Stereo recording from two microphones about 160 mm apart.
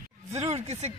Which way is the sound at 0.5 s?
45° right (ahead or behind).